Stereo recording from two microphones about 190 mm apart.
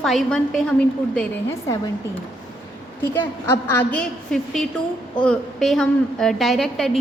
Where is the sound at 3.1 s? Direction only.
10° left (ahead or behind).